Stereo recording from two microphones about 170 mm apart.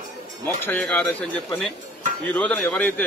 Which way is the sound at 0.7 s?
10° left (ahead or behind).